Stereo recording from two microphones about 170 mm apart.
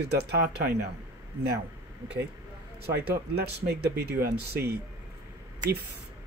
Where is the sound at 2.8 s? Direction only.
65° right (ahead or behind).